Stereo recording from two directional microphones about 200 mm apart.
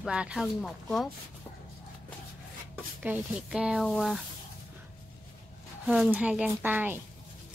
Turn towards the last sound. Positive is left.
turn(degrees=-10)  # may be behind; listen again after turning